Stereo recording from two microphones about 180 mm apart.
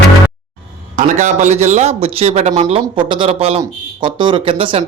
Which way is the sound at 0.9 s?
45° right (ahead or behind).